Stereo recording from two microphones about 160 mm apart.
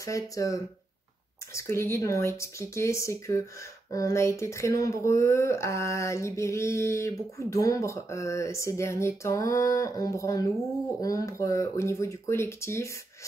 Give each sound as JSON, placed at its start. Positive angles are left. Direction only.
{"t": 0.0, "sound": "speech", "side_deg": 20}